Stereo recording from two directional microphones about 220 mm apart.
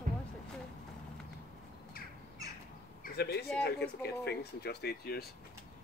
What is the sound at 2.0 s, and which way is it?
Squawk, 40° left (ahead or behind).